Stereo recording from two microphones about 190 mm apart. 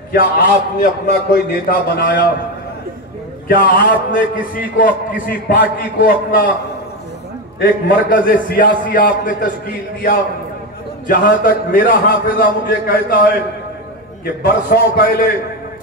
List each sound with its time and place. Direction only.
0.1 s a man's voice: 50° left (ahead or behind)
3.4 s a man's voice: 50° left (ahead or behind)
7.9 s a man's voice: 45° left (ahead or behind)
11.1 s a man's voice: 45° left (ahead or behind)